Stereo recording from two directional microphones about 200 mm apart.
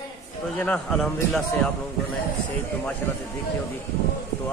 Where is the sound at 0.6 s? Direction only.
5° left (ahead or behind).